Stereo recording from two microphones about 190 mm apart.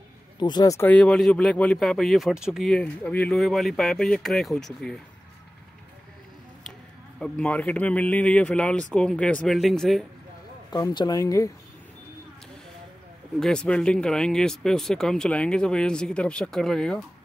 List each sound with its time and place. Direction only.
0.4 s speech: 20° left (ahead or behind); by 5.0 s centre (ahead or behind)
7.2 s speech: 5° left (ahead or behind)
10.7 s speech: 20° left (ahead or behind)
13.4 s speech: 5° left (ahead or behind)